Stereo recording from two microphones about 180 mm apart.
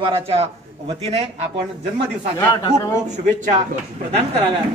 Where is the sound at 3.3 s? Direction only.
45° right (ahead or behind).